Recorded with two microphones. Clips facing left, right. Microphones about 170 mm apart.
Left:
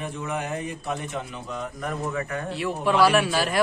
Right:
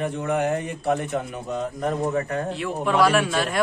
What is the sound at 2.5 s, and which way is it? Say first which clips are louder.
Speech: left 1 dB; 5° left (ahead or behind).